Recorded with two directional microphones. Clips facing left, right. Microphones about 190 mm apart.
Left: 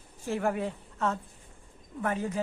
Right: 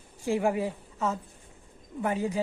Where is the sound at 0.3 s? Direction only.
10° right (ahead or behind).